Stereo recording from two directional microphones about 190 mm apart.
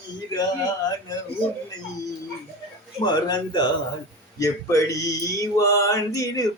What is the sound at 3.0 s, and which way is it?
Speech, 20° left (ahead or behind).